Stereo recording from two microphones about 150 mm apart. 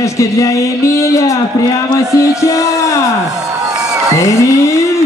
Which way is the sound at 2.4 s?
20° left (ahead or behind).